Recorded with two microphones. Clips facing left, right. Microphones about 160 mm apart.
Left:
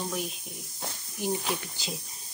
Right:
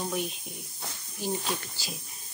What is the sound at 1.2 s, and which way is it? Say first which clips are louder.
Speech: left 2 dB; 15° left (ahead or behind).